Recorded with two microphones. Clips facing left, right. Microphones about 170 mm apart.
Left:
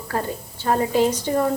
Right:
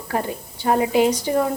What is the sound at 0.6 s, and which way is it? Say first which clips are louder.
Speech: right 2 dB; 15° right (ahead or behind).